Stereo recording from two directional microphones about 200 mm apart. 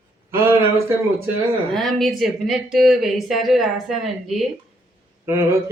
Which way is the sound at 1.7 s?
Centre (ahead or behind).